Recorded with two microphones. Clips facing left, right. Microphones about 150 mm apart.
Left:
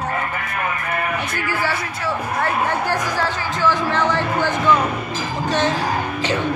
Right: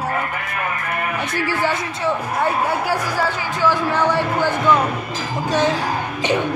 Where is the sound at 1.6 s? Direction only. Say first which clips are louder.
Right 2 dB; 20° right (ahead or behind).